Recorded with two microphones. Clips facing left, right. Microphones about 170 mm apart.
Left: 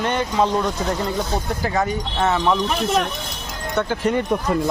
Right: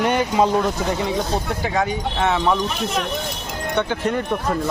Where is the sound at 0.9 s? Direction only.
Centre (ahead or behind).